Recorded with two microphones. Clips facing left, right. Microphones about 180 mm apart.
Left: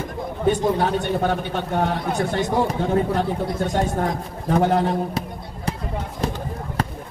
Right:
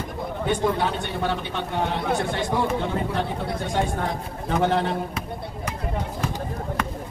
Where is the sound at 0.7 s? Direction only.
40° left (ahead or behind).